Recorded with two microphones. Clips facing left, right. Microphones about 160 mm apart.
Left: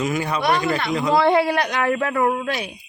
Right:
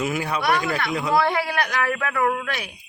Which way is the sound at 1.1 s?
25° left (ahead or behind).